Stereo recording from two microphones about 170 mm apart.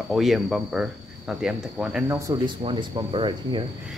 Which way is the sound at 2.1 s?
25° right (ahead or behind).